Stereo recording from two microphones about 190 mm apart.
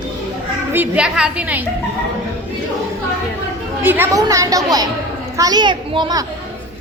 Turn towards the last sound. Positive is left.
turn(degrees=-20)  # may be behind; listen again after turning